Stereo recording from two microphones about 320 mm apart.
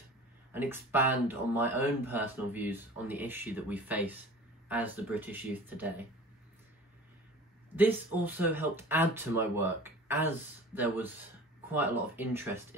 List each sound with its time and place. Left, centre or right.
0.5 s speech: centre
7.7 s speech: centre